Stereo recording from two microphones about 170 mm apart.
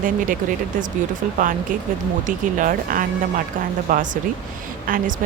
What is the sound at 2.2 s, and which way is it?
Speech, 50° right (ahead or behind).